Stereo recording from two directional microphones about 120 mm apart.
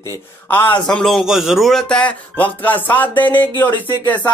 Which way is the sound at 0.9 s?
5° left (ahead or behind).